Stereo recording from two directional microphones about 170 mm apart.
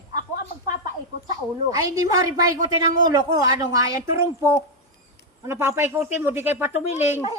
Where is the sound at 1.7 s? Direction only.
20° right (ahead or behind).